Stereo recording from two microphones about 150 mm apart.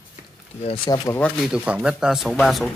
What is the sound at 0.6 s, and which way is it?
Speech, 30° left (ahead or behind).